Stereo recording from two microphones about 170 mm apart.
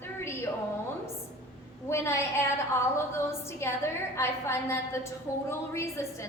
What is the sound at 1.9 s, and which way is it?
A woman's voice, 15° left (ahead or behind).